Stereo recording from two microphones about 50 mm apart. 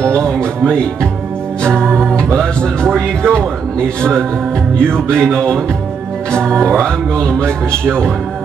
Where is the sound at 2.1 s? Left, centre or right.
Centre.